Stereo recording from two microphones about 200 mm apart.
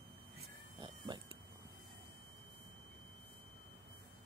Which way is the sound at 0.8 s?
20° right (ahead or behind).